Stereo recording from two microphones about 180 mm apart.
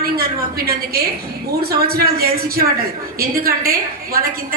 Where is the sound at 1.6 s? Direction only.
60° right (ahead or behind).